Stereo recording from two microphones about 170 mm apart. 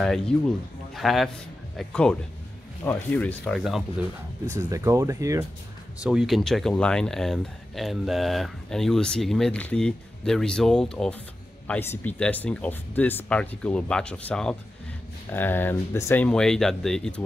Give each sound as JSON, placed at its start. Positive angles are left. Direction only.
{"t": 0.0, "sound": "speech", "side_deg": 0}
{"t": 4.5, "sound": "speech", "side_deg": -20}
{"t": 6.0, "sound": "speech", "side_deg": 0}